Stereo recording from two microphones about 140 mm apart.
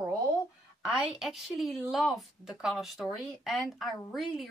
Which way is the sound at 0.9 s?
5° right (ahead or behind).